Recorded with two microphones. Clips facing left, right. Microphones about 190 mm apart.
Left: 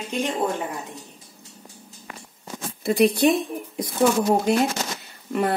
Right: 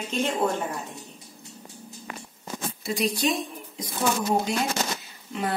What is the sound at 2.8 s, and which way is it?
A woman's voice, 60° left (ahead or behind).